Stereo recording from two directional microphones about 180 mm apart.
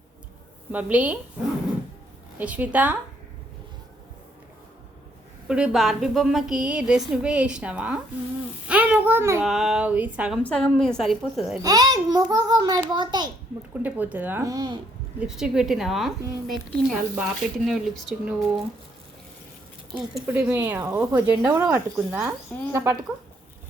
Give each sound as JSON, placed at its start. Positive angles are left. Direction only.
{"t": 0.7, "sound": "speech", "side_deg": -10}
{"t": 2.4, "sound": "speech", "side_deg": -10}
{"t": 5.5, "sound": "a woman's voice", "side_deg": -5}
{"t": 8.6, "sound": "a sound", "side_deg": -10}
{"t": 9.4, "sound": "a woman's voice", "side_deg": 0}
{"t": 11.6, "sound": "a child's voice", "side_deg": -20}
{"t": 13.8, "sound": "speech", "side_deg": -10}
{"t": 15.2, "sound": "a woman's voice", "side_deg": -5}
{"t": 20.1, "sound": "speech", "side_deg": -10}